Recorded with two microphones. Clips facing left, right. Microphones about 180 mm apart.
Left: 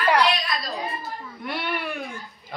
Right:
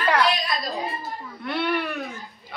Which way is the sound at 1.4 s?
10° left (ahead or behind).